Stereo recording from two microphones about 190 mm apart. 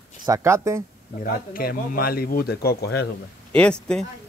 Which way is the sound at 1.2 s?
50° left (ahead or behind).